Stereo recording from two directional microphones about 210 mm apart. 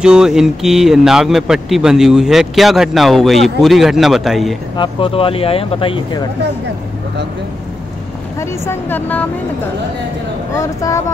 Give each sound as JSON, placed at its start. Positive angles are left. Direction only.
{"t": 0.0, "sound": "speech", "side_deg": -5}
{"t": 4.7, "sound": "speech", "side_deg": 25}
{"t": 8.4, "sound": "a woman's voice", "side_deg": 10}
{"t": 10.5, "sound": "a woman's voice", "side_deg": 15}